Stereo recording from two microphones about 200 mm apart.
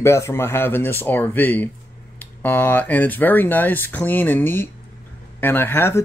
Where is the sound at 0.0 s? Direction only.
15° left (ahead or behind).